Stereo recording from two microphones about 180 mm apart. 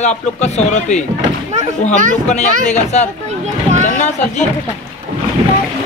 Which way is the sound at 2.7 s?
40° left (ahead or behind).